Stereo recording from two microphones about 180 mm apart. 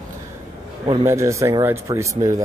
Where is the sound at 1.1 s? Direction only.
15° right (ahead or behind).